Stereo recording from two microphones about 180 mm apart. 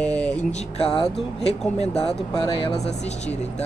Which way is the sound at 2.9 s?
40° left (ahead or behind).